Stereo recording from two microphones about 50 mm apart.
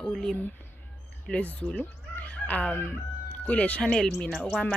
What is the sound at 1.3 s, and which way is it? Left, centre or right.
Speech, left.